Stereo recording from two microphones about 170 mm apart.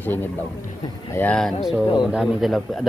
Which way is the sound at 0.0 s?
10° left (ahead or behind).